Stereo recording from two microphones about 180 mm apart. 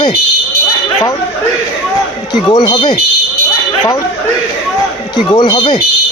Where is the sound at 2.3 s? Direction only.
25° left (ahead or behind).